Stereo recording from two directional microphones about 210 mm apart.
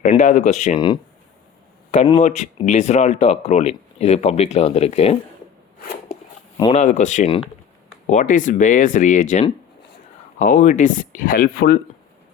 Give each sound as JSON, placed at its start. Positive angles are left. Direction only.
{"t": 0.0, "sound": "speech", "side_deg": 35}
{"t": 1.9, "sound": "speech", "side_deg": 30}
{"t": 6.6, "sound": "speech", "side_deg": 30}